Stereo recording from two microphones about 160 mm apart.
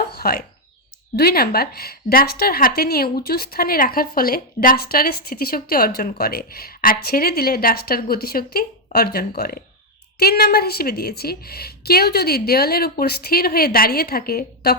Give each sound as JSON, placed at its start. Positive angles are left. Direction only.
{"t": 0.2, "sound": "a woman's voice", "side_deg": 70}